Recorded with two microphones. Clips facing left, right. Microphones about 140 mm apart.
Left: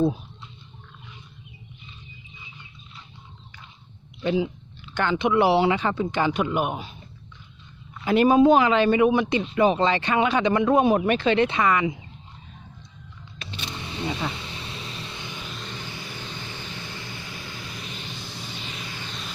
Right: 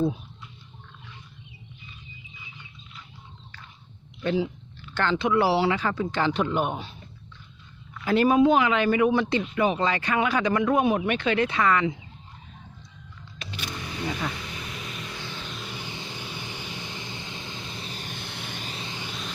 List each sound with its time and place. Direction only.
0.0 s a sound: 30° left (ahead or behind)
4.2 s speech: 15° left (ahead or behind)
7.9 s speech: 20° left (ahead or behind)
8.4 s speech: 35° left (ahead or behind); by 9.4 s 15° left (ahead or behind)
9.4 s speech: 30° left (ahead or behind)
13.6 s vehicle: 25° left (ahead or behind)
15.4 s vehicle: 5° right (ahead or behind); by 17.9 s 25° right (ahead or behind)
17.9 s a sound: 50° right (ahead or behind)
18.6 s vehicle: 35° right (ahead or behind)
18.9 s a sound: 20° right (ahead or behind)